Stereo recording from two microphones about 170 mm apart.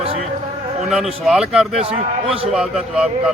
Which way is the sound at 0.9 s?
Centre (ahead or behind).